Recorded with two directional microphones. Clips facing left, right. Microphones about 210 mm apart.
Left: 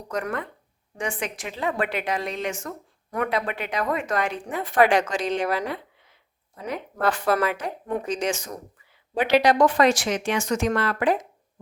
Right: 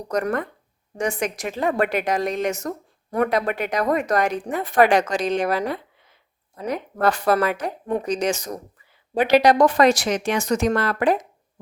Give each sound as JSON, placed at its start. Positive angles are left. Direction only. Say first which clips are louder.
{"t": 0.1, "sound": "a woman's voice", "louder": "right 5 dB", "side_deg": -40}